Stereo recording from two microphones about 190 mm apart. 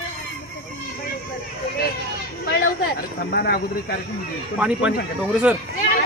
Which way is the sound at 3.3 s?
55° left (ahead or behind).